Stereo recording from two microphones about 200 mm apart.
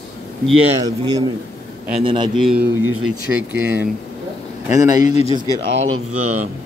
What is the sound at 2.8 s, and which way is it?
Speech, 90° right.